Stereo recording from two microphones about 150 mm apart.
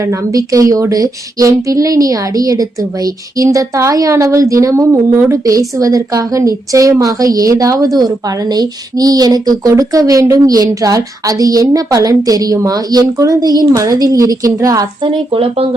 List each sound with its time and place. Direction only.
0.1 s speech: 20° right (ahead or behind)
15.3 s speech: 40° right (ahead or behind)